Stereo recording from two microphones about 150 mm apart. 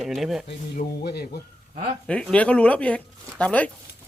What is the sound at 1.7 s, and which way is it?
Speech, 40° right (ahead or behind).